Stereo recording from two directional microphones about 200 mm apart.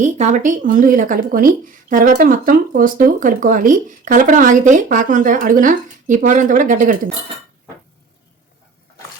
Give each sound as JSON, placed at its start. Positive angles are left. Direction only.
{"t": 0.0, "sound": "speech", "side_deg": -35}